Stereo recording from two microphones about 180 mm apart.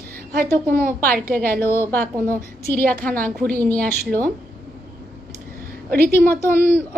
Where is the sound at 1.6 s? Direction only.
10° left (ahead or behind).